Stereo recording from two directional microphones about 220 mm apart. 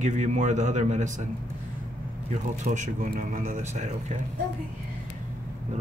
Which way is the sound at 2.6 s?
35° right (ahead or behind).